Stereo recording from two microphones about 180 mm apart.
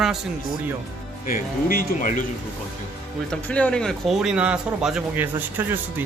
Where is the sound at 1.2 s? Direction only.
55° left (ahead or behind).